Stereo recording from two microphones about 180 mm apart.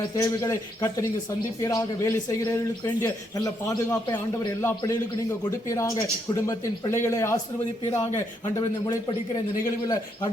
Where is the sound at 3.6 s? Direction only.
20° left (ahead or behind).